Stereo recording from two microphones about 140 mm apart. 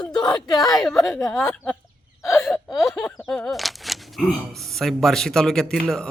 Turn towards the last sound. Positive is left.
turn(degrees=5)  # may be behind; listen again after turning